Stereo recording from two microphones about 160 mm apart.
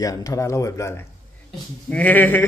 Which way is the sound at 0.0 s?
20° left (ahead or behind).